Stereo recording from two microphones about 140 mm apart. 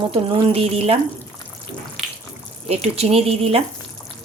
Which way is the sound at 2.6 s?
50° right (ahead or behind).